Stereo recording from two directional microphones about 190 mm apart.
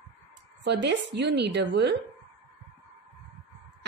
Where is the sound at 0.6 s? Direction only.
65° right (ahead or behind).